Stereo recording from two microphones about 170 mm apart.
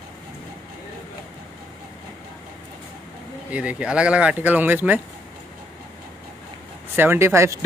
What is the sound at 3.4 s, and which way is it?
Speech, 10° right (ahead or behind).